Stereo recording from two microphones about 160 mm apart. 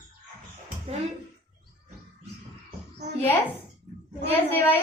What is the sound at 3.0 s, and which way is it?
Speech, 90° right.